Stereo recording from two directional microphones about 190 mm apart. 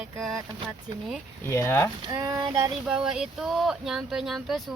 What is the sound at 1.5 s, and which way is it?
Speech, 15° left (ahead or behind).